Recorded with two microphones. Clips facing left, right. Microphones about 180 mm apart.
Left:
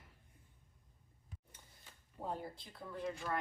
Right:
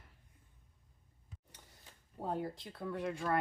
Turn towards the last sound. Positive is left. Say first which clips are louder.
# right 5 dB
turn(degrees=-70)  # may be behind; listen again after turning